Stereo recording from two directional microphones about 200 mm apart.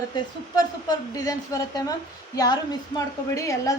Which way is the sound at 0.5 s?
20° left (ahead or behind).